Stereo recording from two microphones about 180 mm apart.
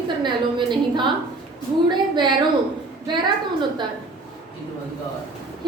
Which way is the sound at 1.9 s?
25° right (ahead or behind).